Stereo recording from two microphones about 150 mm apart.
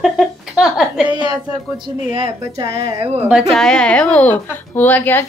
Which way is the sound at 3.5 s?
5° left (ahead or behind).